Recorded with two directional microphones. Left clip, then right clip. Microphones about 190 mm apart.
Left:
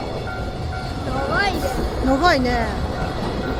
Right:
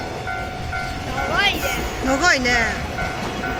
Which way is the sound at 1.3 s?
35° left (ahead or behind).